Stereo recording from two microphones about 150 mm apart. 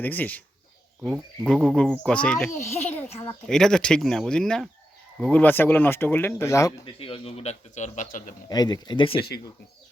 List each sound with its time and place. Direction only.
0.0 s speech: 10° left (ahead or behind)
1.5 s speech: 5° left (ahead or behind)
2.5 s a man's voice: 45° left (ahead or behind)
3.4 s speech: 5° left (ahead or behind); by 6.7 s 20° left (ahead or behind)
6.8 s a man's voice: 40° left (ahead or behind); by 8.4 s 60° left (ahead or behind)
8.4 s speech: 25° left (ahead or behind)